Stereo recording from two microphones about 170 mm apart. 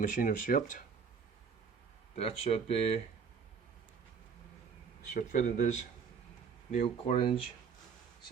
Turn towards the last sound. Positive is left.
turn(degrees=30)  # may be behind; listen again after turning